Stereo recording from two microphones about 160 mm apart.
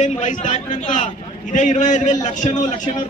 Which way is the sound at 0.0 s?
50° left (ahead or behind).